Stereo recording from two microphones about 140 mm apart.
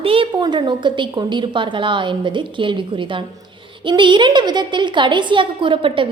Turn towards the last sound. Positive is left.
turn(degrees=-35)  # may be behind; listen again after turning